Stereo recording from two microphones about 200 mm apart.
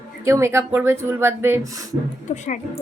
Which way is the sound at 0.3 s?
15° right (ahead or behind).